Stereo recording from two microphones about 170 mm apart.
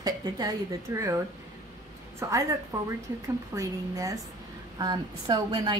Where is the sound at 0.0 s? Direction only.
25° right (ahead or behind).